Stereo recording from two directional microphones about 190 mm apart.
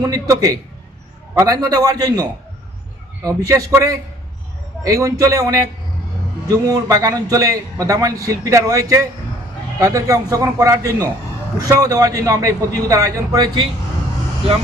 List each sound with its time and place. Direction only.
0.0 s a man's voice: 20° right (ahead or behind)
3.2 s a man's voice: 15° right (ahead or behind)
6.7 s a man's voice: 20° right (ahead or behind)